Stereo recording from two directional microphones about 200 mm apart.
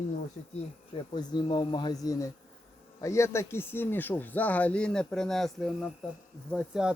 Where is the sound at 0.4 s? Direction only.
40° left (ahead or behind).